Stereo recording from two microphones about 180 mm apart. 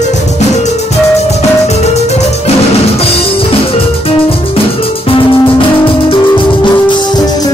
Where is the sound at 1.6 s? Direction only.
35° left (ahead or behind).